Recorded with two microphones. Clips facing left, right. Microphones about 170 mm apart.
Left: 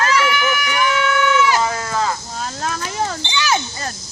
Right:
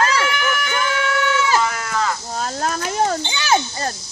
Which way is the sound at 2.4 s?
45° right (ahead or behind).